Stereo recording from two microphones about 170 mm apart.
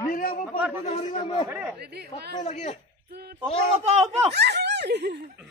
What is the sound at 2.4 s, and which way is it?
Speech, 40° left (ahead or behind).